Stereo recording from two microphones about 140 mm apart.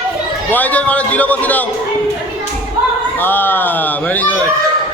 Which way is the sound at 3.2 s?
15° left (ahead or behind).